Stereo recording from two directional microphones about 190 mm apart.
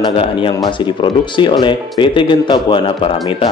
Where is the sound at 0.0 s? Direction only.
25° left (ahead or behind).